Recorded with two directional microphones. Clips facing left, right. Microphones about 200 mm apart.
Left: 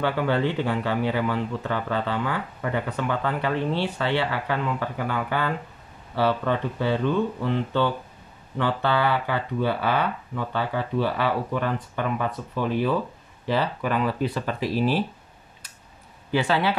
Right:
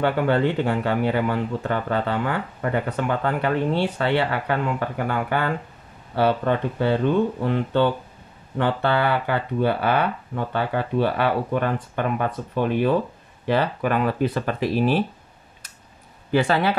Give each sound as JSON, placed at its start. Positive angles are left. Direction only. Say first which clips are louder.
{"t": 0.0, "sound": "speech", "louder": "right 3 dB", "side_deg": -50}
{"t": 16.3, "sound": "speech", "louder": "right 3 dB", "side_deg": -45}